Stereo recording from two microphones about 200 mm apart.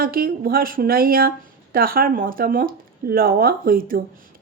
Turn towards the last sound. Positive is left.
turn(degrees=-45)  # may be behind; listen again after turning